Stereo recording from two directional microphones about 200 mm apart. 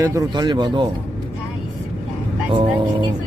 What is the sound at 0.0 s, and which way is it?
Speech, 15° right (ahead or behind).